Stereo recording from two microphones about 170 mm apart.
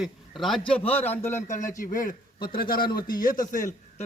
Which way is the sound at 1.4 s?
45° left (ahead or behind).